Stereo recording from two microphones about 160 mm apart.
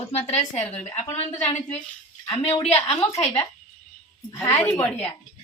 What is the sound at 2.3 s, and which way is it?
Speech, 40° left (ahead or behind).